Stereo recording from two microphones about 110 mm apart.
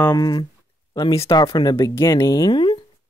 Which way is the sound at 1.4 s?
45° left (ahead or behind).